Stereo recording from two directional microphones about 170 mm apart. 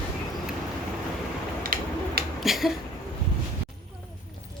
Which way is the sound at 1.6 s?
60° right (ahead or behind).